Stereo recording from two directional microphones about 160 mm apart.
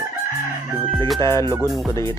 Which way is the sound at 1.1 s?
20° left (ahead or behind).